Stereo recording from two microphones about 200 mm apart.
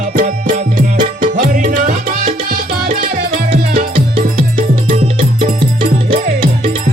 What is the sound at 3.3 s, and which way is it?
Music, 45° right (ahead or behind).